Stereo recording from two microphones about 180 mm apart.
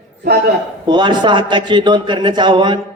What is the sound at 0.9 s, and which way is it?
A woman's voice, 25° right (ahead or behind).